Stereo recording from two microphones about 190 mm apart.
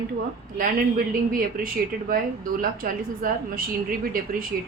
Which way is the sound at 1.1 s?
50° right (ahead or behind).